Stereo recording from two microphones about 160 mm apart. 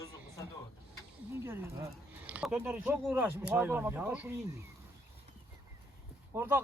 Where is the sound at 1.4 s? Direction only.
15° right (ahead or behind).